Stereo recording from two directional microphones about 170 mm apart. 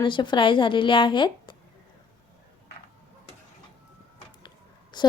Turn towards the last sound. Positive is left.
turn(degrees=25)  # may be behind; listen again after turning